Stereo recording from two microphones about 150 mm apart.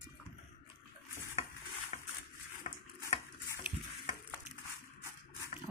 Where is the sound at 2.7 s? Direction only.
60° left (ahead or behind).